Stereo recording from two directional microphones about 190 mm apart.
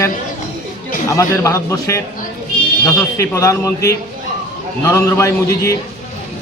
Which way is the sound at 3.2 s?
15° left (ahead or behind).